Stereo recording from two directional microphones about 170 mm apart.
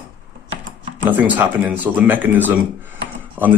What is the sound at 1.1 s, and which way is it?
Speech, 10° right (ahead or behind).